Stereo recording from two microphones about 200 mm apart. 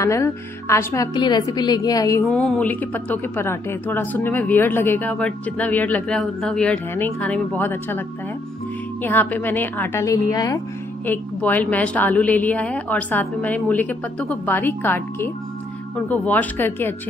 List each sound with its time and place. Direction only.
0.0 s a woman's voice: 15° left (ahead or behind)
9.0 s a woman's voice: 10° left (ahead or behind)